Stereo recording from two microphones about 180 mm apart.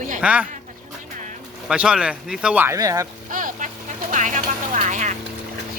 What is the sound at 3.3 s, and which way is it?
Vehicle, 45° right (ahead or behind).